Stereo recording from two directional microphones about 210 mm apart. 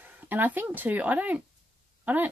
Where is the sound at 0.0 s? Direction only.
10° right (ahead or behind).